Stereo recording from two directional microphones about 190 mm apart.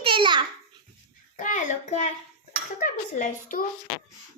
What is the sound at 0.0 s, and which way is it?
Babbling, 25° right (ahead or behind).